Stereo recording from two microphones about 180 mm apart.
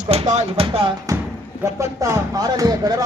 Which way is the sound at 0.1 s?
35° right (ahead or behind).